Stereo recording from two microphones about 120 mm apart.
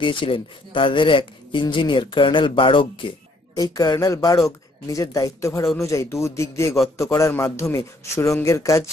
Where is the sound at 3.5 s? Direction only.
30° left (ahead or behind).